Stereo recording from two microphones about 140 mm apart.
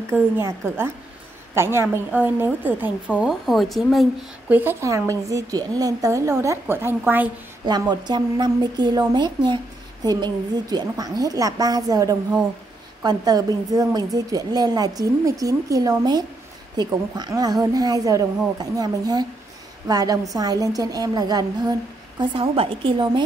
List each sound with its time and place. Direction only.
0.1 s a woman's voice: 15° right (ahead or behind); by 4.1 s centre (ahead or behind)
4.5 s a woman's voice: 15° right (ahead or behind)
7.6 s a woman's voice: 30° right (ahead or behind)
22.2 s a woman's voice: 40° right (ahead or behind)